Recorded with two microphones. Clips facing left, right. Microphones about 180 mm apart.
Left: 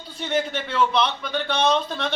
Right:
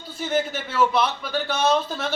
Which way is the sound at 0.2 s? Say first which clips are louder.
Even; 5° right (ahead or behind).